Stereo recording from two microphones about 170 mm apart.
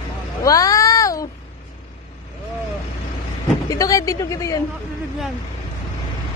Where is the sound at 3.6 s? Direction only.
20° left (ahead or behind).